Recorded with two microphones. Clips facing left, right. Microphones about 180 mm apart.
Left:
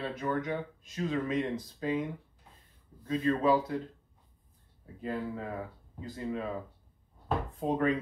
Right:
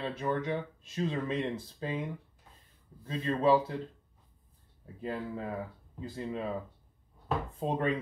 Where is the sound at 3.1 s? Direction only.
25° right (ahead or behind).